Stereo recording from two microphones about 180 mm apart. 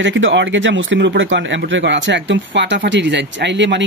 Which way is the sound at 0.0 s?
90° right.